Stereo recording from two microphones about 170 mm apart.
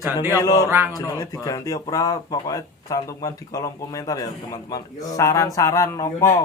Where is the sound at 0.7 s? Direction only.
10° right (ahead or behind).